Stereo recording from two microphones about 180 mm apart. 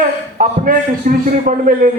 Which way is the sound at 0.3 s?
50° right (ahead or behind).